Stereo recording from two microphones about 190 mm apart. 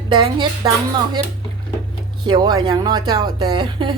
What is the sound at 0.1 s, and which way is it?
Speech, 25° right (ahead or behind).